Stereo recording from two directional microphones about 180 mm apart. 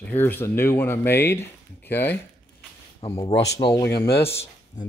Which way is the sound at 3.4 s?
20° left (ahead or behind).